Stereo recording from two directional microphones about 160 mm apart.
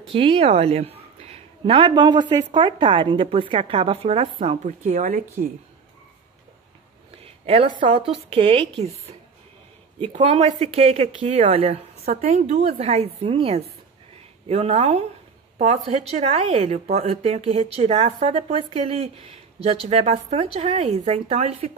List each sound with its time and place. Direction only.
0.1 s speech: 35° right (ahead or behind); by 5.2 s 55° right (ahead or behind)
7.2 s a sound: 35° right (ahead or behind)
7.8 s speech: 35° right (ahead or behind)
9.9 s a woman's voice: 35° right (ahead or behind)